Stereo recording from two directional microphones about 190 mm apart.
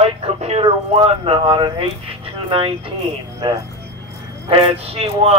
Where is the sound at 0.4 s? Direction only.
30° right (ahead or behind).